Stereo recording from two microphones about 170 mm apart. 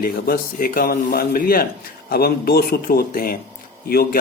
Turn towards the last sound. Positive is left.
turn(degrees=65)  # may be behind; listen again after turning